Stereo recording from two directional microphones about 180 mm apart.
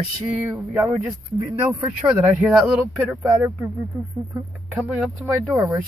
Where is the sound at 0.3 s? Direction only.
10° right (ahead or behind).